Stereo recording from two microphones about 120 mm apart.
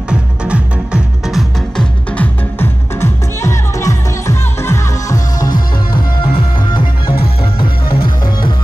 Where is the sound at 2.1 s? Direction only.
15° left (ahead or behind).